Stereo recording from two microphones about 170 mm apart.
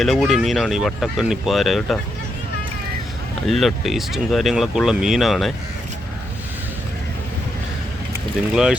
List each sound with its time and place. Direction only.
0.0 s speech: centre (ahead or behind)
3.4 s speech: centre (ahead or behind)